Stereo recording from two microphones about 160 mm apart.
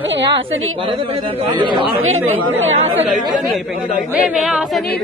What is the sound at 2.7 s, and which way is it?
Speech, 40° right (ahead or behind).